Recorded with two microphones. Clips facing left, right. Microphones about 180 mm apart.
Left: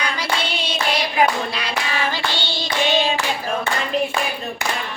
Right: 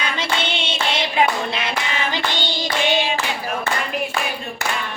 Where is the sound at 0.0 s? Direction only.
25° right (ahead or behind).